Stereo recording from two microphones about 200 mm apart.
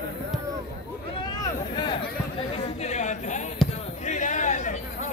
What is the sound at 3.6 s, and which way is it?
Basketball bounce, centre (ahead or behind).